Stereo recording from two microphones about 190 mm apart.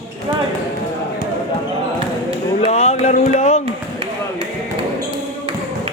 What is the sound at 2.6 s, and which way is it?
Music, 35° left (ahead or behind).